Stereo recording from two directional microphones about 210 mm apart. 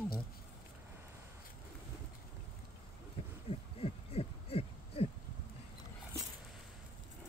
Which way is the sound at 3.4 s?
30° left (ahead or behind).